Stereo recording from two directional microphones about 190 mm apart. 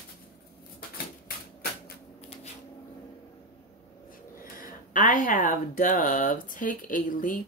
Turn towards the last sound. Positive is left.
turn(degrees=45)  # may be behind; listen again after turning